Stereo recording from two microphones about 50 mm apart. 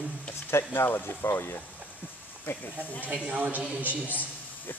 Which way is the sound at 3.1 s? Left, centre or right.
Right.